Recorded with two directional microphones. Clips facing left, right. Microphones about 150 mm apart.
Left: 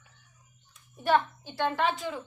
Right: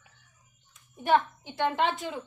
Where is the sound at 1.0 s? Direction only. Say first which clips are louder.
Right 1 dB; 20° right (ahead or behind).